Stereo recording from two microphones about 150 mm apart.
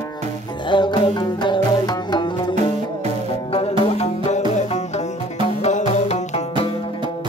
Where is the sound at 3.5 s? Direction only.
40° left (ahead or behind).